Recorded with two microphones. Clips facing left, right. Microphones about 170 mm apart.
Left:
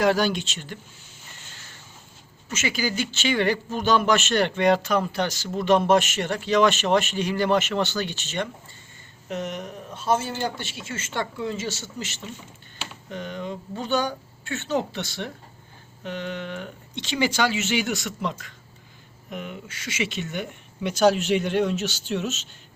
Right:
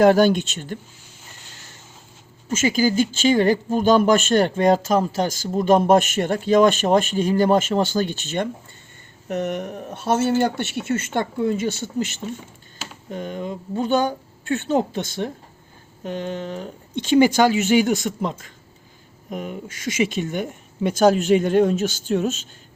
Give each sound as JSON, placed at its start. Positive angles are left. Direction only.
{"t": 0.0, "sound": "speech", "side_deg": -50}
{"t": 2.6, "sound": "speech", "side_deg": -45}
{"t": 9.3, "sound": "speech", "side_deg": -55}
{"t": 12.2, "sound": "speech", "side_deg": -40}
{"t": 16.9, "sound": "speech", "side_deg": -50}